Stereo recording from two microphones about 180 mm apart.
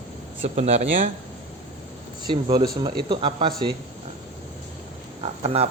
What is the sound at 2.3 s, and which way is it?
Speech, 25° right (ahead or behind).